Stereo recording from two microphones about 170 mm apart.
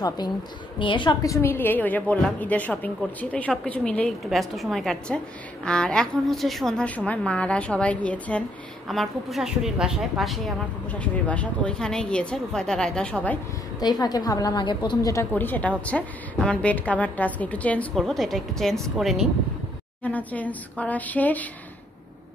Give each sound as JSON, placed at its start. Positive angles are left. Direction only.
{"t": 0.7, "sound": "a woman's voice", "side_deg": 30}
{"t": 13.7, "sound": "a woman's voice", "side_deg": 25}